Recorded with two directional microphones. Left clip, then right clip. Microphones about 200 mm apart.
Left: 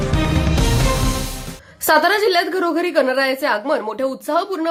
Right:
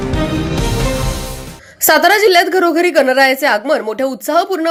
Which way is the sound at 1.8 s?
15° right (ahead or behind).